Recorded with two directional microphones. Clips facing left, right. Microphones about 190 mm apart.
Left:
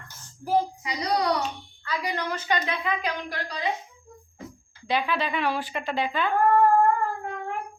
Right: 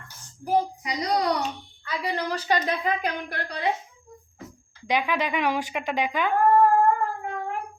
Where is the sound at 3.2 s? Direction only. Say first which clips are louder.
Right 1 dB; 60° right (ahead or behind).